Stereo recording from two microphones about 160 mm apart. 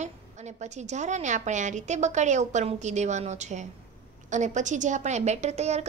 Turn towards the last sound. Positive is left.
turn(degrees=-45)  # may be behind; listen again after turning